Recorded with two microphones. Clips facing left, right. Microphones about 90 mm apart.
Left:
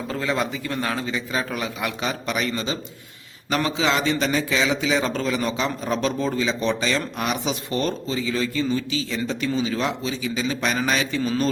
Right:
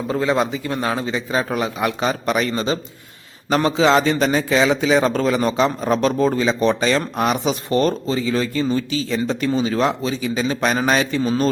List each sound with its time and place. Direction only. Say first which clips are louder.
0.1 s a man's voice: right 6 dB; 25° right (ahead or behind)